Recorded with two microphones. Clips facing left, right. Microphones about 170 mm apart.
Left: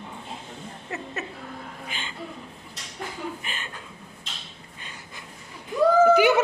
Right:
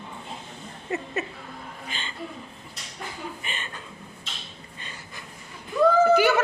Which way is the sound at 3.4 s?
5° left (ahead or behind).